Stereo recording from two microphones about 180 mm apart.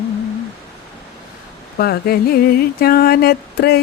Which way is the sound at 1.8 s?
60° left (ahead or behind).